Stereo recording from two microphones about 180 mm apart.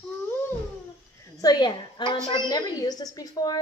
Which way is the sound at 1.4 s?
25° left (ahead or behind).